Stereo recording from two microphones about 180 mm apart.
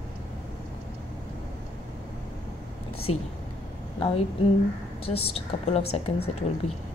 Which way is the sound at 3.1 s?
35° left (ahead or behind).